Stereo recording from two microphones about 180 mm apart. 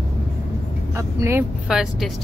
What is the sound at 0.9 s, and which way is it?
Speech, 15° right (ahead or behind).